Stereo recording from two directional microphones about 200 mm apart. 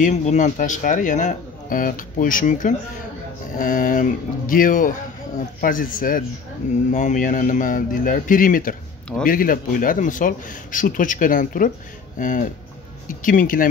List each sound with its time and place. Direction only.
0.0 s speech: 35° left (ahead or behind)